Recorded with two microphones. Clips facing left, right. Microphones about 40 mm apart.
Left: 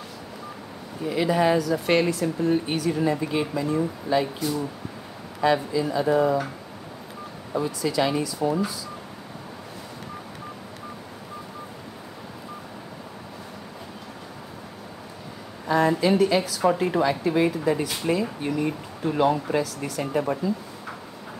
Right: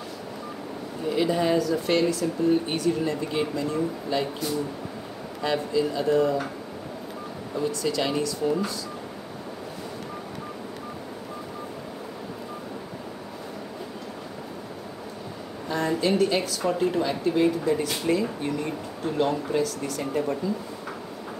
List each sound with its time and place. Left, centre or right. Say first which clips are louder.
1.0 s a woman's voice: left 2 dB; centre
1.9 s speech: left 1 dB; centre
2.6 s a woman's voice: left 1 dB; centre
7.5 s a woman's voice: left 2 dB; centre
15.7 s a woman's voice: left 4 dB; centre